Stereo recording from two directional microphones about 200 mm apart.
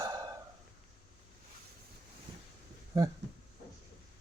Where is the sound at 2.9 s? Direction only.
15° right (ahead or behind).